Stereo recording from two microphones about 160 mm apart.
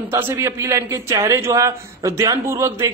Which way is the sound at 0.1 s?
15° right (ahead or behind).